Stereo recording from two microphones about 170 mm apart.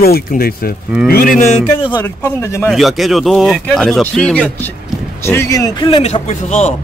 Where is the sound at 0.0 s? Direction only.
60° left (ahead or behind).